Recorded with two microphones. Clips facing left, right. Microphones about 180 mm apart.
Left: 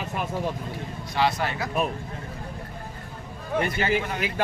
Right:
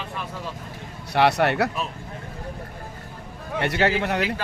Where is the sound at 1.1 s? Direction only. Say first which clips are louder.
Right 6 dB; 70° right (ahead or behind).